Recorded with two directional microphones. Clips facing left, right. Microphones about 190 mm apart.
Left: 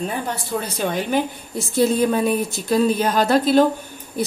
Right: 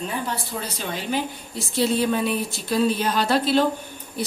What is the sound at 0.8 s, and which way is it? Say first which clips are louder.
Speech: left 6 dB; 50° left (ahead or behind).